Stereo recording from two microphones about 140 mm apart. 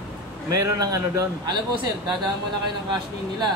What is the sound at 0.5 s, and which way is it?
A man's voice, 25° right (ahead or behind).